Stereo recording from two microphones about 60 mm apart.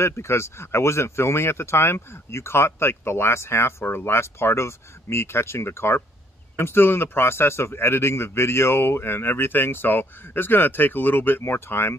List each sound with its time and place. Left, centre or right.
0.0 s a man's voice: left